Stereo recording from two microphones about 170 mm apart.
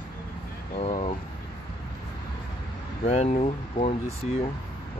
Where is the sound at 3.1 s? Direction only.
40° left (ahead or behind).